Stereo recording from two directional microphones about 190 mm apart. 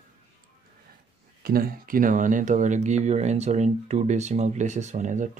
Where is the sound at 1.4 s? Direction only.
50° right (ahead or behind).